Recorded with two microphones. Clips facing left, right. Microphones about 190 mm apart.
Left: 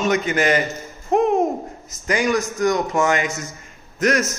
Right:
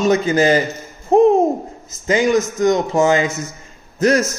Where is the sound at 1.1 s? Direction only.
30° right (ahead or behind).